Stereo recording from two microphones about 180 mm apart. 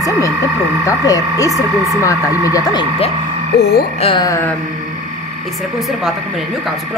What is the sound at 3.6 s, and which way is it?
Speech, 65° left (ahead or behind).